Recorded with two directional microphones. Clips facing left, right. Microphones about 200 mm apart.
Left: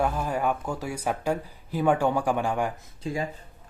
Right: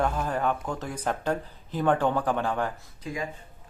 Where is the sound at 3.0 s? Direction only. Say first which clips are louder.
Left 4 dB; 30° left (ahead or behind).